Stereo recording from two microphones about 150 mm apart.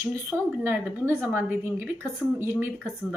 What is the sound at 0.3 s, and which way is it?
A woman's voice, 15° right (ahead or behind).